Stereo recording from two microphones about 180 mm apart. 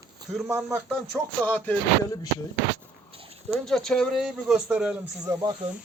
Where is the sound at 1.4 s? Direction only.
10° left (ahead or behind).